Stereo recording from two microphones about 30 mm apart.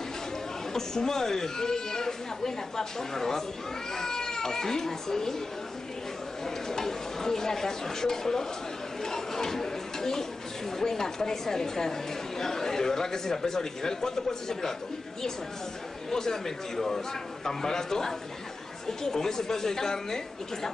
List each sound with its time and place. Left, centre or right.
0.7 s speech: centre
6.4 s stir: centre
9.0 s chatter: centre
10.8 s speech: centre
16.1 s speech: centre